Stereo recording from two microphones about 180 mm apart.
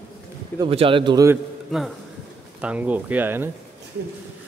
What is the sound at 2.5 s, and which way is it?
Speech, 5° right (ahead or behind).